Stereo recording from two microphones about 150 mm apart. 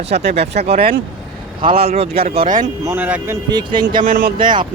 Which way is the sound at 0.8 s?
90° right.